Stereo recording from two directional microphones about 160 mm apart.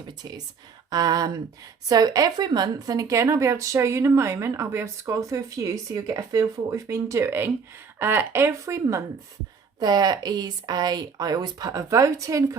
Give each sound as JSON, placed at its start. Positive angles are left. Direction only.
{"t": 0.2, "sound": "a woman's voice", "side_deg": -25}